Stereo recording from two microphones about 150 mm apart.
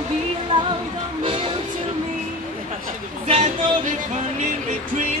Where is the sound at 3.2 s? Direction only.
45° right (ahead or behind).